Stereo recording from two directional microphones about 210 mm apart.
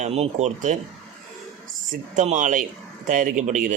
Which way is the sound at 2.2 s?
35° right (ahead or behind).